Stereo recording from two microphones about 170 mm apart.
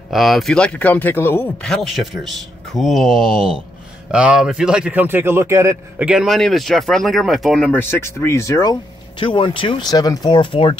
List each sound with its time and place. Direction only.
0.1 s speech: centre (ahead or behind); by 8.7 s 20° left (ahead or behind)
9.2 s speech: 30° left (ahead or behind)